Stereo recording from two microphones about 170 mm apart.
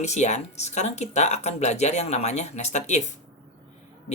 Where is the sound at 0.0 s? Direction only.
40° left (ahead or behind).